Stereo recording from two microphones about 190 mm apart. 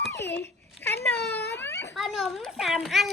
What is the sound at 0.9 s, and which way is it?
Wail, 60° left (ahead or behind).